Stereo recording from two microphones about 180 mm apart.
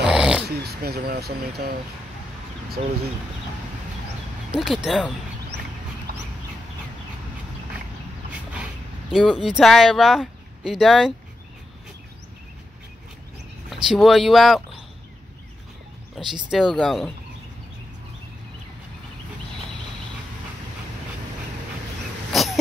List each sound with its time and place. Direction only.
0.0 s dog: 5° right (ahead or behind)
0.5 s speech: 60° right (ahead or behind)
4.5 s speech: centre (ahead or behind)
6.1 s bird: 60° right (ahead or behind)
9.1 s speech: centre (ahead or behind)
13.7 s speech: centre (ahead or behind)
16.4 s speech: centre (ahead or behind)
22.3 s throat clearing: centre (ahead or behind)